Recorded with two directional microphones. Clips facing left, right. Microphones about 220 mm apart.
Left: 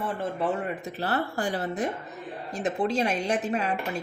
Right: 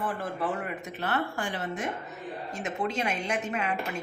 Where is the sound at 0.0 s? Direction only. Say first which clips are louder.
Left 3 dB; 25° left (ahead or behind).